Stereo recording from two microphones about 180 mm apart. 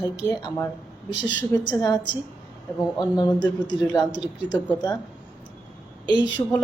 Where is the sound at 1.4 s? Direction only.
20° left (ahead or behind).